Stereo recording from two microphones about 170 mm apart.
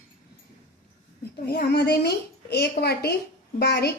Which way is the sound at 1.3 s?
70° left (ahead or behind).